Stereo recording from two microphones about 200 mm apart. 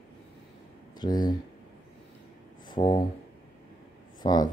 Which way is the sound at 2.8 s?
30° left (ahead or behind).